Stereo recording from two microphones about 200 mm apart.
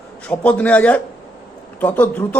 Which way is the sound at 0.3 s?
5° left (ahead or behind).